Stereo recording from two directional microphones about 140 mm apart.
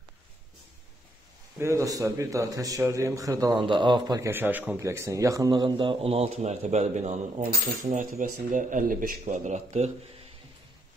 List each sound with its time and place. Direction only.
1.6 s speech: 20° right (ahead or behind)
3.6 s a man's voice: 35° right (ahead or behind)
4.2 s a man's voice: 15° right (ahead or behind); by 7.4 s 55° right (ahead or behind)
7.9 s speech: 65° right (ahead or behind); by 9.2 s 85° right
9.2 s speech: 60° right (ahead or behind)